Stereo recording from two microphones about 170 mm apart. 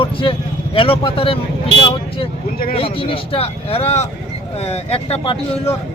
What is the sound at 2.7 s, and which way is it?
Speech, 35° left (ahead or behind).